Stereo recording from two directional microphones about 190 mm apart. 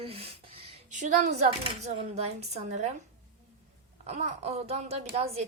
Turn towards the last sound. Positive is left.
turn(degrees=-35)  # may be behind; listen again after turning